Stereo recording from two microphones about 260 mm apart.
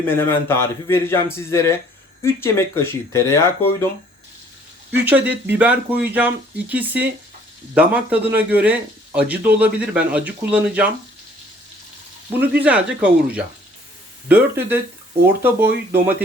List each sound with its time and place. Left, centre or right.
0.0 s a man's voice: centre
4.9 s speech: centre
12.4 s speech: centre